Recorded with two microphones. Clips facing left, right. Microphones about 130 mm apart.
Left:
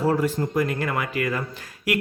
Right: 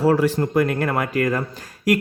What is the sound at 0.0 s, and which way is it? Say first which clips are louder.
Speech: right 4 dB; 85° right.